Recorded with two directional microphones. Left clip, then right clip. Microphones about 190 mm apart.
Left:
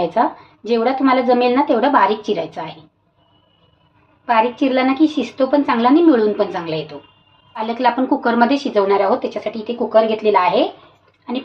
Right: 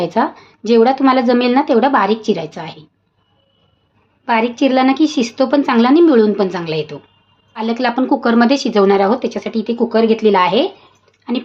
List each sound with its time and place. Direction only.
0.0 s a woman's voice: 45° right (ahead or behind)
4.3 s a woman's voice: 40° right (ahead or behind)